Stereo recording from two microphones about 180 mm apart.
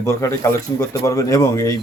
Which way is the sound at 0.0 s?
15° left (ahead or behind).